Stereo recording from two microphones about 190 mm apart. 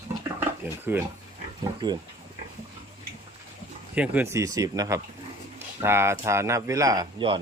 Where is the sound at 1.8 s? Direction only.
20° right (ahead or behind).